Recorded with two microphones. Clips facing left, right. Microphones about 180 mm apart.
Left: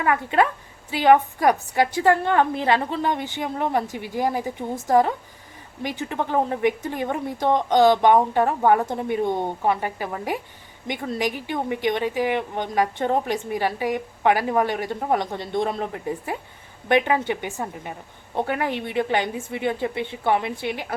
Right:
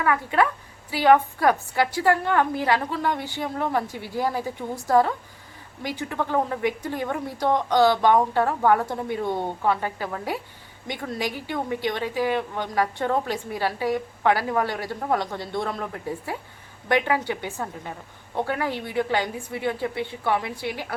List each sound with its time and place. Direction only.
0.0 s a woman's voice: 25° left (ahead or behind)